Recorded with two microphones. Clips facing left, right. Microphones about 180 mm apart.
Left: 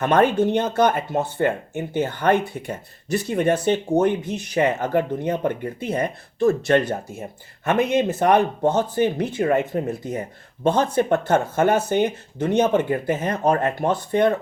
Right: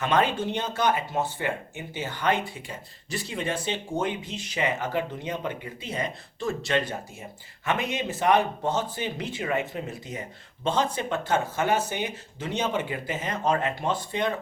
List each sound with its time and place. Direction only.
0.0 s speech: 50° left (ahead or behind)